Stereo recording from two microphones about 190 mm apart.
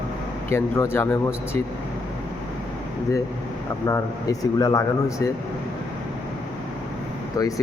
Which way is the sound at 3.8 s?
15° left (ahead or behind).